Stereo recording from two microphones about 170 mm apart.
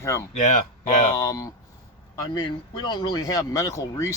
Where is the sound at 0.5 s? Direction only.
45° left (ahead or behind).